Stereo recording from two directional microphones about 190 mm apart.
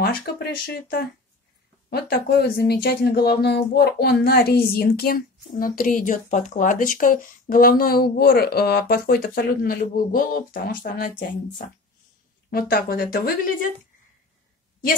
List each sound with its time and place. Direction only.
0.0 s speech: 50° left (ahead or behind)